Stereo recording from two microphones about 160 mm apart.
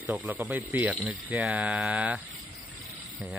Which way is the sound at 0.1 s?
10° right (ahead or behind).